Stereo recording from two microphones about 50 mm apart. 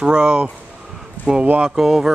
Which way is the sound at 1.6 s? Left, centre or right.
Centre.